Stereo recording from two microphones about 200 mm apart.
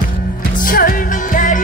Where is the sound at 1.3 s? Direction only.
40° left (ahead or behind).